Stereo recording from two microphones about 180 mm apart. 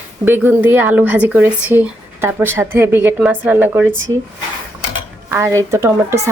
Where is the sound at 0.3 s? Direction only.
10° right (ahead or behind).